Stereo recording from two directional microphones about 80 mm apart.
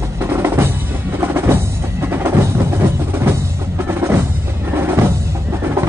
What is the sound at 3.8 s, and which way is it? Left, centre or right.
Music, right.